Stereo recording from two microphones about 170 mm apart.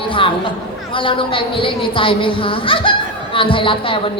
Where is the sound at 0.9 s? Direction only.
30° left (ahead or behind).